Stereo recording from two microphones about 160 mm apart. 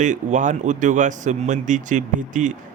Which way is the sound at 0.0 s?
50° right (ahead or behind).